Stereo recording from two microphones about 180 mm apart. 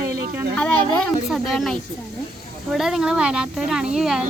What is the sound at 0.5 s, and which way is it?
A woman's voice, 5° left (ahead or behind).